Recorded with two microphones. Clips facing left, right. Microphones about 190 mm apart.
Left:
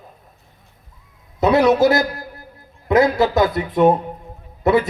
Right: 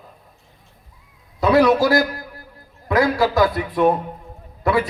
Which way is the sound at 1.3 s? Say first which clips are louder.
Left 1 dB; 20° left (ahead or behind).